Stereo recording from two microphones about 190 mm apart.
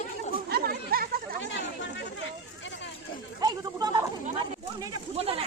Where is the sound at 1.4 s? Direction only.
75° left (ahead or behind).